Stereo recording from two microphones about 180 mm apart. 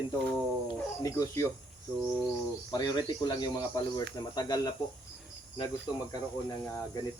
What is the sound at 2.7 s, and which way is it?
Speech, 20° left (ahead or behind).